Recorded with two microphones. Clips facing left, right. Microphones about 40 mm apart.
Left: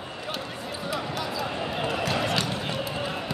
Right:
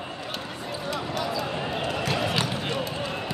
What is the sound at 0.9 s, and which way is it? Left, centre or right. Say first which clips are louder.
Basketball bounce: right 2 dB; centre.